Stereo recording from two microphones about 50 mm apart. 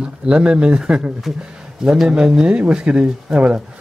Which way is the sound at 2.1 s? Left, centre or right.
Centre.